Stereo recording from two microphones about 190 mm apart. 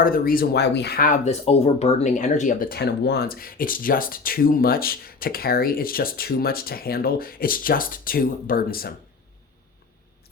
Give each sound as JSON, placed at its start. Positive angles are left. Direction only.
{"t": 0.0, "sound": "speech", "side_deg": 50}